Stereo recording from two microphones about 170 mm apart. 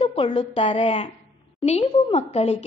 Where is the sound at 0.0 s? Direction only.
35° left (ahead or behind).